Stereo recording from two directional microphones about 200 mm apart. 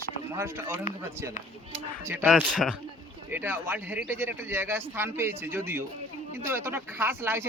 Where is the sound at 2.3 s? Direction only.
5° left (ahead or behind).